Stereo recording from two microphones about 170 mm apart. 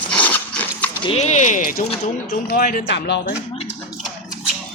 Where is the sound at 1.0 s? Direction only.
40° left (ahead or behind); by 2.8 s 55° left (ahead or behind).